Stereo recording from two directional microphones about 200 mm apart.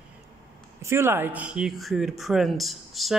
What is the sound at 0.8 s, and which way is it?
Speech, 10° right (ahead or behind).